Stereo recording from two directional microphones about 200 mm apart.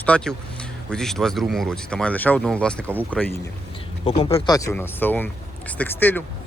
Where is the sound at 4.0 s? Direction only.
30° left (ahead or behind).